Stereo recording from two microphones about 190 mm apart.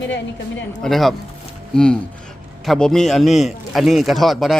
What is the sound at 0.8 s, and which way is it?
Speech, centre (ahead or behind).